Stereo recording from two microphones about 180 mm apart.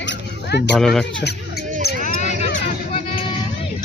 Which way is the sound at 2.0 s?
40° left (ahead or behind).